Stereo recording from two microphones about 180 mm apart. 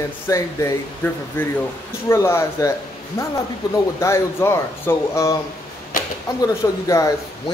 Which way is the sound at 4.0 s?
15° left (ahead or behind).